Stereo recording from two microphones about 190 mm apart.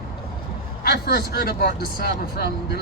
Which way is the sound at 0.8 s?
55° left (ahead or behind).